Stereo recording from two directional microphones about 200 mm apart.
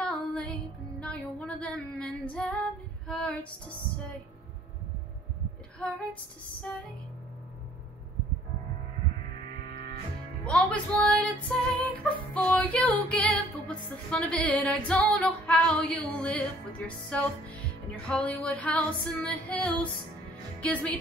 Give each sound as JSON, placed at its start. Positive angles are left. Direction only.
{"t": 0.0, "sound": "music", "side_deg": 5}
{"t": 3.1, "sound": "female singing", "side_deg": 5}
{"t": 9.6, "sound": "music", "side_deg": 25}
{"t": 10.4, "sound": "music", "side_deg": 5}
{"t": 12.4, "sound": "female singing", "side_deg": 10}
{"t": 20.6, "sound": "music", "side_deg": 5}